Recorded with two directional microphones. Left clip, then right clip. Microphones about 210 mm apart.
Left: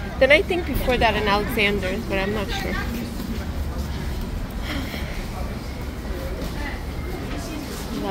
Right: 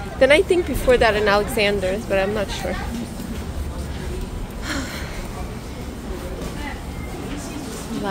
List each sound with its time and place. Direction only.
0.2 s a woman's voice: 20° right (ahead or behind)